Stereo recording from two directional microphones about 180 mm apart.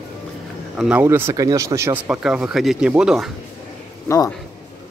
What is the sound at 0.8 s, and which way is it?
Speech, 10° right (ahead or behind).